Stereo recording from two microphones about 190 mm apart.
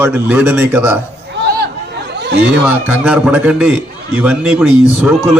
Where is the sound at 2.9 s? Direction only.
5° right (ahead or behind).